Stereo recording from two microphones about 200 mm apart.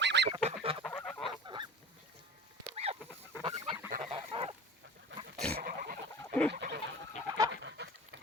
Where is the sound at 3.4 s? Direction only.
25° right (ahead or behind).